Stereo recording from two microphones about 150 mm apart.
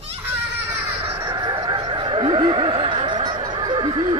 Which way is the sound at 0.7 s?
15° right (ahead or behind).